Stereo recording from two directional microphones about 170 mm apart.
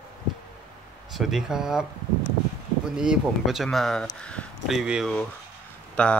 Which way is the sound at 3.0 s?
5° right (ahead or behind).